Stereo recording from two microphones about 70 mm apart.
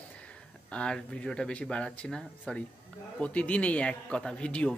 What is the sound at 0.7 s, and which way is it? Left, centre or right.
A man's voice, centre.